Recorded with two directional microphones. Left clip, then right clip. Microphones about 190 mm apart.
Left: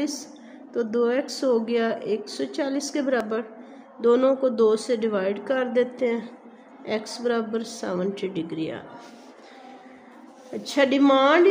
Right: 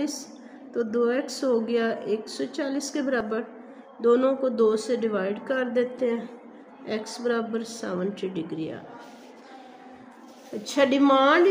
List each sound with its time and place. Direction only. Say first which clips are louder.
0.0 s speech: left 2 dB; 25° left (ahead or behind)
10.6 s speech: left 1 dB; 25° left (ahead or behind)